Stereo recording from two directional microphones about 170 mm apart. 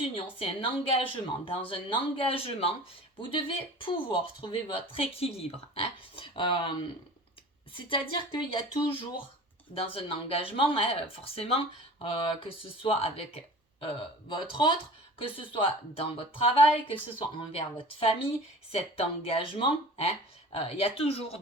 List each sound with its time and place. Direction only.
0.0 s speech: 35° left (ahead or behind)